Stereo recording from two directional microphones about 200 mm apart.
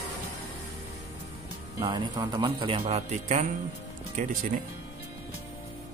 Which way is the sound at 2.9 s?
35° right (ahead or behind).